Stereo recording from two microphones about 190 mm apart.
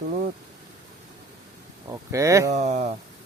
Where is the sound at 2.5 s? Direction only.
40° right (ahead or behind).